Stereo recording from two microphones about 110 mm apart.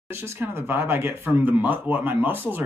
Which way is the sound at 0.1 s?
20° right (ahead or behind).